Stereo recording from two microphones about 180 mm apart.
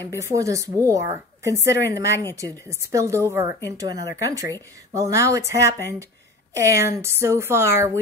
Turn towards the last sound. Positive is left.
turn(degrees=-15)  # may be behind; listen again after turning